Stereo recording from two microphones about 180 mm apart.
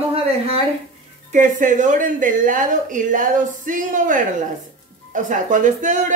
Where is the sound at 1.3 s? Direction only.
45° right (ahead or behind).